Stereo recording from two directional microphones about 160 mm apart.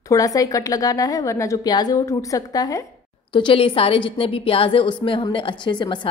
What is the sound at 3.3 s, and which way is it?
A woman's voice, 30° left (ahead or behind).